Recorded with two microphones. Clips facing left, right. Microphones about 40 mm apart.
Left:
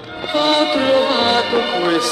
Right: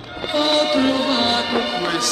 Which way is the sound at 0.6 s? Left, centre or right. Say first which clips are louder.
Left 3 dB; centre.